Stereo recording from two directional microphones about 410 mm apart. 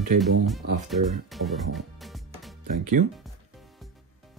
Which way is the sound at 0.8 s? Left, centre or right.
Centre.